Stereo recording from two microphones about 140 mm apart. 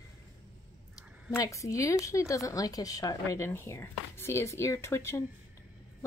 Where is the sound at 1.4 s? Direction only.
20° left (ahead or behind).